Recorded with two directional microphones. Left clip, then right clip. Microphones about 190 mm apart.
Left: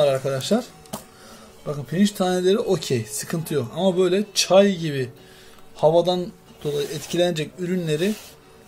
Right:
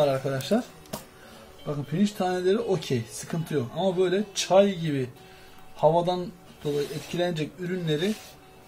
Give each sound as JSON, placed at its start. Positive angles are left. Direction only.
{"t": 0.0, "sound": "speech", "side_deg": 35}
{"t": 1.7, "sound": "speech", "side_deg": 40}